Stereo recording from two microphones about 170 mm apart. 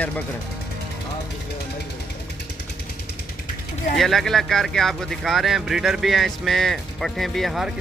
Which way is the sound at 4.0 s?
Centre (ahead or behind).